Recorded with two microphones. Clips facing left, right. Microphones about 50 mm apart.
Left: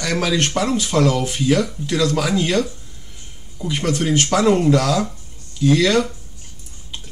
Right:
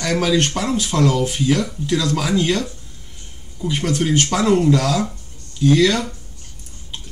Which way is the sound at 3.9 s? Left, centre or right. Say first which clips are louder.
Left 1 dB; centre.